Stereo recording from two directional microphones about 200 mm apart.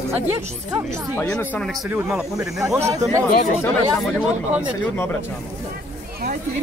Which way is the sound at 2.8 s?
15° right (ahead or behind).